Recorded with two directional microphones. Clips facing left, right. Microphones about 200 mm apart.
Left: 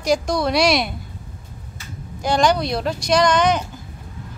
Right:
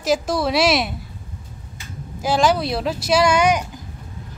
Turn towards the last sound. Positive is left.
turn(degrees=-10)  # may be behind; listen again after turning